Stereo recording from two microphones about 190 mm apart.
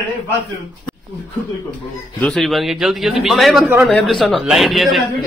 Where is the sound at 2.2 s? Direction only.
Centre (ahead or behind).